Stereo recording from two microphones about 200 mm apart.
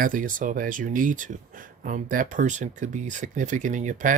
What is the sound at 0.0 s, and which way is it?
Speech, 40° right (ahead or behind).